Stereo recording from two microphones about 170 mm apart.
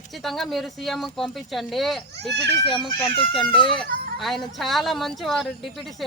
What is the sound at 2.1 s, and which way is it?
Speech, 80° right.